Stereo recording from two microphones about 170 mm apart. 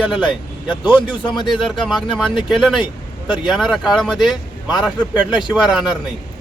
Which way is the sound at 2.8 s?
30° left (ahead or behind).